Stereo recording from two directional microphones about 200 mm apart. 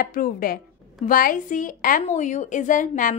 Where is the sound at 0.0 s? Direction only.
45° left (ahead or behind).